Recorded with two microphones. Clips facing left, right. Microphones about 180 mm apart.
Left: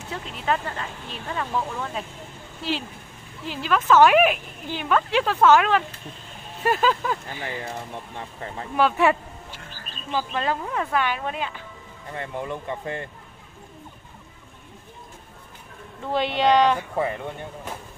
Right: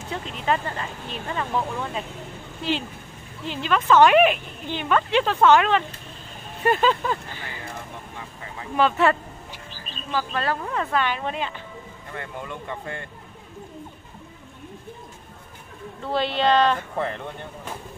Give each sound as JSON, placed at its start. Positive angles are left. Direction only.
{"t": 0.1, "sound": "a woman's voice", "side_deg": -5}
{"t": 3.4, "sound": "a woman's voice", "side_deg": 5}
{"t": 8.7, "sound": "speech", "side_deg": 10}
{"t": 12.1, "sound": "speech", "side_deg": 25}
{"t": 16.0, "sound": "speech", "side_deg": 15}